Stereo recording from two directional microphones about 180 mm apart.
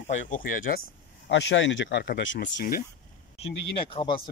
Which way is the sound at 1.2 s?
90° left.